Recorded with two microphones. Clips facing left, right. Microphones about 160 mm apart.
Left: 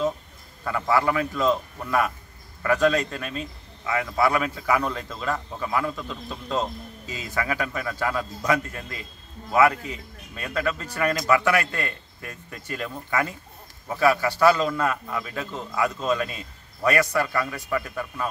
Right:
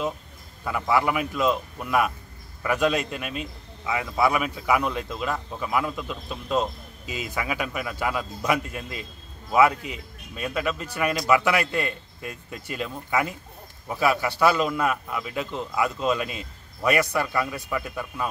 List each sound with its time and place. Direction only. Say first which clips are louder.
0.7 s a man's voice: left 1 dB; 10° right (ahead or behind)